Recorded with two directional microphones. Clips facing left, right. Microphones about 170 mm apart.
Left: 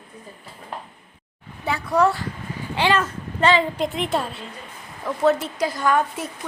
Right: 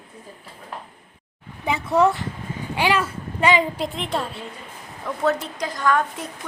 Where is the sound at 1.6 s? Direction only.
20° right (ahead or behind).